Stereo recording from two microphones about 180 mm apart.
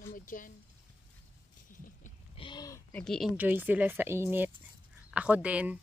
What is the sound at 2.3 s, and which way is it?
Speech, 25° left (ahead or behind).